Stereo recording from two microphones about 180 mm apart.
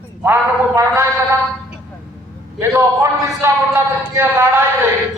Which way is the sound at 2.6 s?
15° right (ahead or behind).